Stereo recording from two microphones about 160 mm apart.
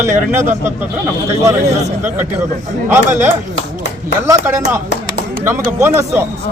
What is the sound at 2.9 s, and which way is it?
A man's voice, 15° right (ahead or behind).